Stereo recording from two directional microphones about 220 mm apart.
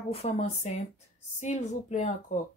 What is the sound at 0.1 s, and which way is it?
Speech, 30° left (ahead or behind).